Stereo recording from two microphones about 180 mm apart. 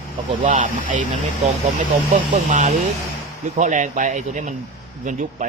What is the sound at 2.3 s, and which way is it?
Speech, 40° right (ahead or behind).